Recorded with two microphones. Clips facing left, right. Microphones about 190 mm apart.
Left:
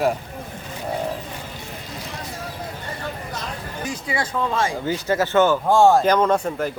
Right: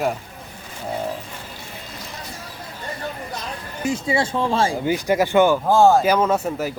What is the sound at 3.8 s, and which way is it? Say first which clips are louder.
Speech: right 6 dB; 25° right (ahead or behind).